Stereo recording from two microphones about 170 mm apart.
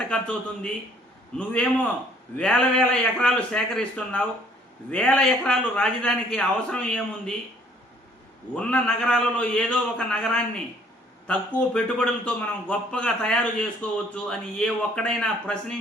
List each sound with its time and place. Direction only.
0.1 s a man's voice: 5° left (ahead or behind)
8.5 s a man's voice: 5° left (ahead or behind)